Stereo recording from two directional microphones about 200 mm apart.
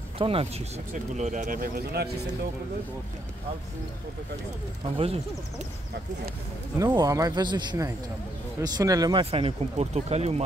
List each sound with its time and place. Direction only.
0.2 s speech: 30° right (ahead or behind); by 2.0 s 50° right (ahead or behind)
4.9 s speech: 30° right (ahead or behind)
6.8 s speech: 15° right (ahead or behind)
9.2 s speech: 30° right (ahead or behind)